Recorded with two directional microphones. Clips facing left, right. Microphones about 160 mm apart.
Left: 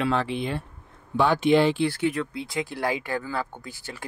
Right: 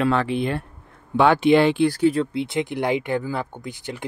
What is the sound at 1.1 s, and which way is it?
Speech, 65° right (ahead or behind).